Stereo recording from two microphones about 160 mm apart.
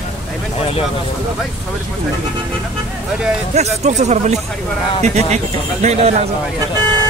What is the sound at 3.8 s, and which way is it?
A man's voice, 45° right (ahead or behind).